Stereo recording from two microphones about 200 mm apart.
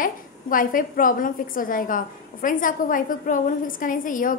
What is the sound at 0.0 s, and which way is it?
A woman's voice, 45° left (ahead or behind).